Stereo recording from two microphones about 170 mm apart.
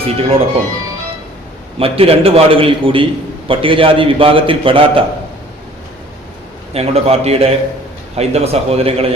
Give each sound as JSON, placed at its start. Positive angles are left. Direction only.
{"t": 0.0, "sound": "a man's voice", "side_deg": -35}
{"t": 1.8, "sound": "a man's voice", "side_deg": -35}
{"t": 6.7, "sound": "a man's voice", "side_deg": -35}